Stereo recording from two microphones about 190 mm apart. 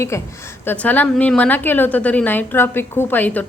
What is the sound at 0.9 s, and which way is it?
A woman's voice, 10° left (ahead or behind).